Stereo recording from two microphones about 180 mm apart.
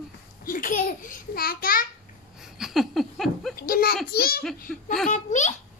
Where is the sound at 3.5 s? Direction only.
55° left (ahead or behind).